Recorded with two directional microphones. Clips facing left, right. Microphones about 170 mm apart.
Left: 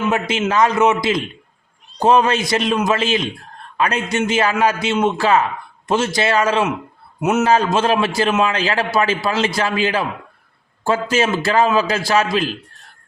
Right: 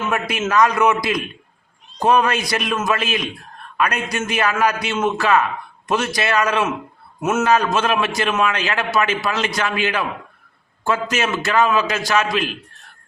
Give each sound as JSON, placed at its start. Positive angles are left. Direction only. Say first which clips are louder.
{"t": 0.1, "sound": "a man's voice", "louder": "left 2 dB", "side_deg": 25}
{"t": 7.4, "sound": "a man's voice", "louder": "left 1 dB", "side_deg": 30}